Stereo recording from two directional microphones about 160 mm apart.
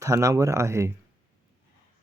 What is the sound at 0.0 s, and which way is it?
Speech, 20° right (ahead or behind).